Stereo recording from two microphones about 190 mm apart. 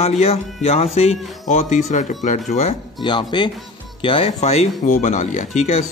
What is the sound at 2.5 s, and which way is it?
Speech, 30° left (ahead or behind).